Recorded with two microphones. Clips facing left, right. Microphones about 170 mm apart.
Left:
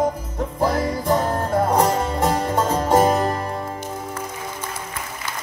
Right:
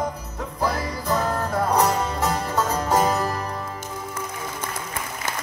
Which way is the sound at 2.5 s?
30° left (ahead or behind).